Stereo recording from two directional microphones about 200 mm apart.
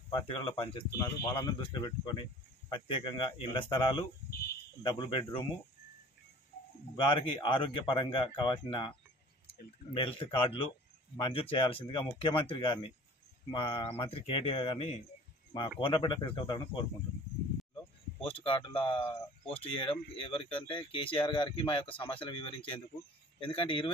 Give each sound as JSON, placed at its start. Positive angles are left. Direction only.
{"t": 0.1, "sound": "speech", "side_deg": 25}
{"t": 4.9, "sound": "speech", "side_deg": 25}
{"t": 7.1, "sound": "speech", "side_deg": 25}
{"t": 9.9, "sound": "speech", "side_deg": 25}
{"t": 18.2, "sound": "speech", "side_deg": 25}